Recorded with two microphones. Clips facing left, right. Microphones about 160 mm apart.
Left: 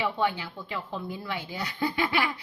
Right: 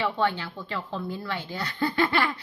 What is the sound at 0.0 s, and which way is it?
A woman's voice, 10° left (ahead or behind).